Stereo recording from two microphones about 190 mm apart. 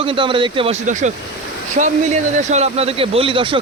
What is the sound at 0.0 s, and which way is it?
Speech, 25° right (ahead or behind).